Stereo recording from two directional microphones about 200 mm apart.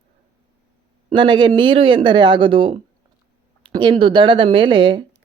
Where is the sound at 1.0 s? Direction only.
25° right (ahead or behind).